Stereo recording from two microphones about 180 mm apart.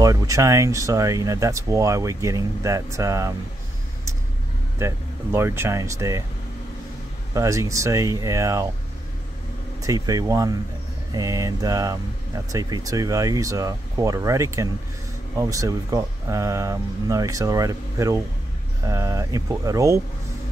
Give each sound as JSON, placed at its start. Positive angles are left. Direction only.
{"t": 0.0, "sound": "speech", "side_deg": -20}
{"t": 4.7, "sound": "speech", "side_deg": -15}
{"t": 7.3, "sound": "speech", "side_deg": -15}
{"t": 9.8, "sound": "speech", "side_deg": -20}